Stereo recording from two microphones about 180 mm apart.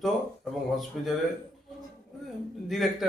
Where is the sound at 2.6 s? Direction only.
Centre (ahead or behind).